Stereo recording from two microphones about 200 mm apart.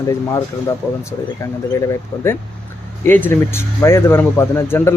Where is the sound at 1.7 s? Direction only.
15° left (ahead or behind).